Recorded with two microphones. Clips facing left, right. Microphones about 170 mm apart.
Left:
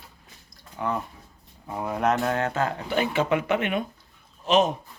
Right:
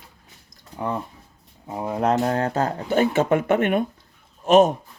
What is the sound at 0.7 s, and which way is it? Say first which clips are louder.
Speech: right 1 dB; 30° right (ahead or behind).